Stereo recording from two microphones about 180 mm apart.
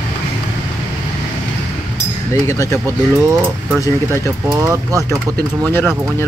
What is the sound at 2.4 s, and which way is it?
Speech, 15° left (ahead or behind).